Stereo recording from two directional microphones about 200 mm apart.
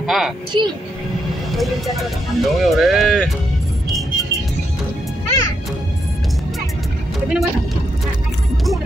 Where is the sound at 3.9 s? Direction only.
Centre (ahead or behind).